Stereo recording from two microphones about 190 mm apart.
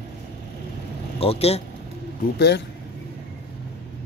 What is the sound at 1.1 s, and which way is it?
Speech, 30° left (ahead or behind).